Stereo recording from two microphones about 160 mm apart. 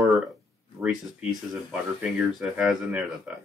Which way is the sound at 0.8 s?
15° right (ahead or behind).